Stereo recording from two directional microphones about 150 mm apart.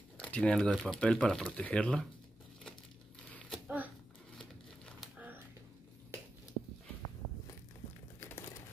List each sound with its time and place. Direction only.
0.2 s speech: 5° left (ahead or behind)
3.3 s shuffling cards: 5° left (ahead or behind)
3.6 s a sound: 10° right (ahead or behind)
4.4 s crumpling: 5° left (ahead or behind)
5.1 s a sound: 10° right (ahead or behind)
8.2 s crumpling: 15° left (ahead or behind)